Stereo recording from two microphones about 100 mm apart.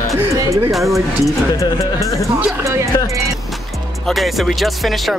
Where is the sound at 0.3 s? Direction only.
30° right (ahead or behind).